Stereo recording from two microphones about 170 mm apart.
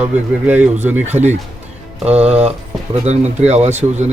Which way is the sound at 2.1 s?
40° right (ahead or behind).